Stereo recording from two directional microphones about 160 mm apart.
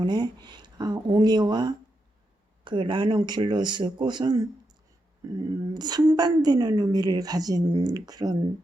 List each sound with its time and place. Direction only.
0.0 s a woman's voice: 25° right (ahead or behind)
5.5 s a woman's voice: 20° right (ahead or behind)